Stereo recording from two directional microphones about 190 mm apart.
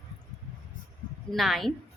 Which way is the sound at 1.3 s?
Centre (ahead or behind).